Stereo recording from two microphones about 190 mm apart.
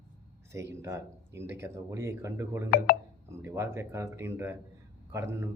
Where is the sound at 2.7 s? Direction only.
50° left (ahead or behind).